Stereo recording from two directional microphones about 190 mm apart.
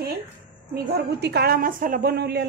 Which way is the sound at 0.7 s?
60° right (ahead or behind).